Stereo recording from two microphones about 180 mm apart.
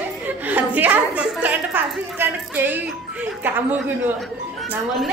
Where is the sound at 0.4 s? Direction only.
10° right (ahead or behind).